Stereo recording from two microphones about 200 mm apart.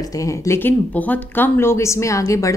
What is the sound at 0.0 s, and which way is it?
A woman's voice, 15° left (ahead or behind).